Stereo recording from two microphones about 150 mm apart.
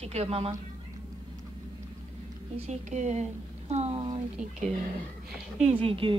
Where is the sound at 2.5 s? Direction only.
45° right (ahead or behind).